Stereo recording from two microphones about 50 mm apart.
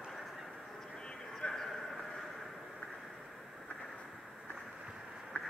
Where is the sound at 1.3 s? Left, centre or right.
Centre.